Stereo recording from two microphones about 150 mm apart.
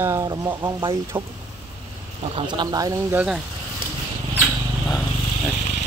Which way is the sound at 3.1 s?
10° right (ahead or behind).